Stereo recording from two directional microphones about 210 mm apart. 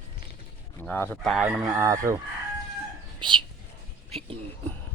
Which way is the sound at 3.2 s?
20° right (ahead or behind).